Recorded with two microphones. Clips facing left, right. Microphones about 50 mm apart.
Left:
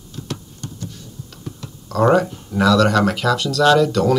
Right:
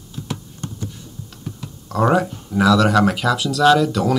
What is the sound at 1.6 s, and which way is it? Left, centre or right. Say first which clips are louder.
Speech: left 1 dB; centre.